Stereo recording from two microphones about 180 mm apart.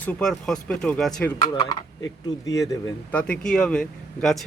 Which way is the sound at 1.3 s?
25° left (ahead or behind).